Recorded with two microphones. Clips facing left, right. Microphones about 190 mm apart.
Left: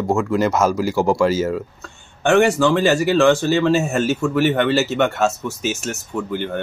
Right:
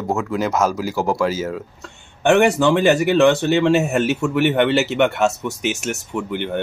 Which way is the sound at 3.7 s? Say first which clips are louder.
Right 1 dB; 65° right (ahead or behind).